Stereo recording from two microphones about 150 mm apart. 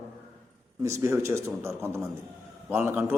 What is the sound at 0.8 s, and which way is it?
A man's voice, 20° right (ahead or behind).